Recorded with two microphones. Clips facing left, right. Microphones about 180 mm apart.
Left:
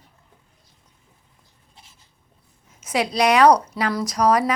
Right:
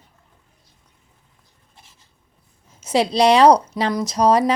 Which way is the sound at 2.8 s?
30° right (ahead or behind).